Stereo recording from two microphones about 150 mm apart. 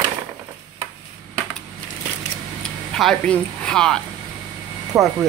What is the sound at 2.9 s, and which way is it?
A woman's voice, 5° left (ahead or behind).